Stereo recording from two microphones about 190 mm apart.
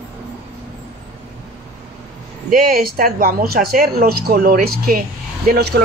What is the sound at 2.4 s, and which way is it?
Speech, 50° right (ahead or behind).